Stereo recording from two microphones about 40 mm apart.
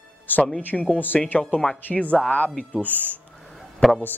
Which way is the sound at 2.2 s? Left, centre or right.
Left.